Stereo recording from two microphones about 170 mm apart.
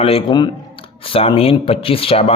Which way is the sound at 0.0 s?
35° left (ahead or behind).